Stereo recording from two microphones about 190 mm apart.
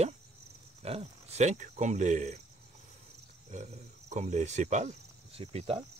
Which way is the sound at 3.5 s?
40° right (ahead or behind).